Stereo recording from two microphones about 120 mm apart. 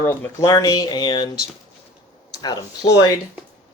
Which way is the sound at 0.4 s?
30° left (ahead or behind).